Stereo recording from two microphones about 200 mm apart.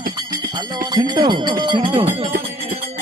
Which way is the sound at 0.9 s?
20° right (ahead or behind).